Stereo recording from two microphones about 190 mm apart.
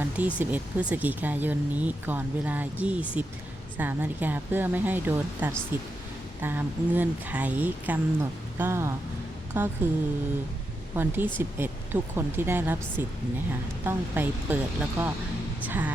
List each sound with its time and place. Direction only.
0.0 s speech: 10° right (ahead or behind)
10.9 s speech: 10° right (ahead or behind)